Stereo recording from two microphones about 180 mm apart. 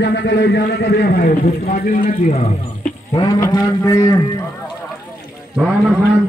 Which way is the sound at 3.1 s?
20° left (ahead or behind).